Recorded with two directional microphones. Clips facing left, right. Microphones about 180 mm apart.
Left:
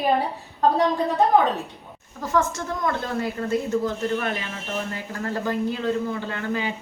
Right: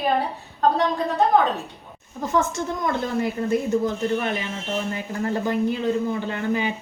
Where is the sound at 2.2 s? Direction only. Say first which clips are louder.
Right 1 dB; 20° right (ahead or behind).